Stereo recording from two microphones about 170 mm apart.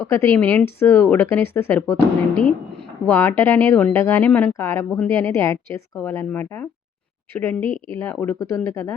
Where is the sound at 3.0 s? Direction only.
15° left (ahead or behind).